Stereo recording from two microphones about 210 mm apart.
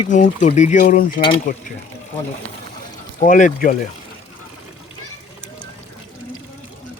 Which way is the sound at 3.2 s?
40° left (ahead or behind).